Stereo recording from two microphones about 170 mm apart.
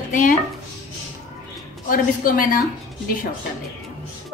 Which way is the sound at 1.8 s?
55° left (ahead or behind).